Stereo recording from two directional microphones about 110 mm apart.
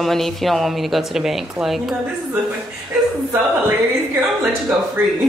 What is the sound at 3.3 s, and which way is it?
Speech, 15° right (ahead or behind).